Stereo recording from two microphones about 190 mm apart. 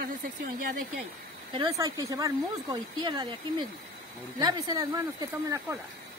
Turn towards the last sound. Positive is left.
turn(degrees=-20)  # may be behind; listen again after turning